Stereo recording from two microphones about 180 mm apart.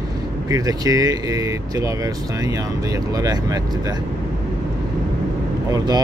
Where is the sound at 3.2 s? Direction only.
20° right (ahead or behind).